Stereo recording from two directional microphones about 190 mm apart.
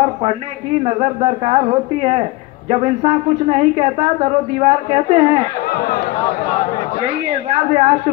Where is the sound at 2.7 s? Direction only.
35° right (ahead or behind).